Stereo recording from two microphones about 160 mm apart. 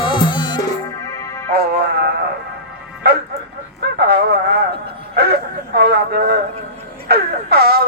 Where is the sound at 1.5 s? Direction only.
75° right (ahead or behind).